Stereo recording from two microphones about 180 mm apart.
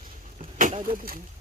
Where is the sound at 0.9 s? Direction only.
55° right (ahead or behind).